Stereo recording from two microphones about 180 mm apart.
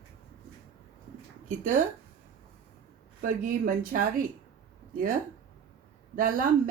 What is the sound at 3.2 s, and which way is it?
Speech, 50° right (ahead or behind).